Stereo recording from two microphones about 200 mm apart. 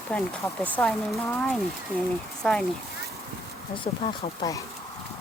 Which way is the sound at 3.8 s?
20° left (ahead or behind).